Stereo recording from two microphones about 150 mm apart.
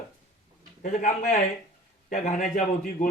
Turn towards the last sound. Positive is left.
turn(degrees=55)  # may be behind; listen again after turning